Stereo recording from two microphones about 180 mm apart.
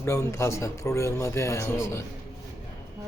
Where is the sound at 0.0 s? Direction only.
15° left (ahead or behind).